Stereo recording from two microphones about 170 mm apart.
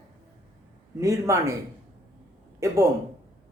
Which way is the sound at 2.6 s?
20° right (ahead or behind).